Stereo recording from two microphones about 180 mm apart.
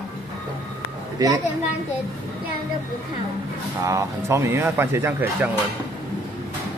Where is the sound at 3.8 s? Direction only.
20° right (ahead or behind).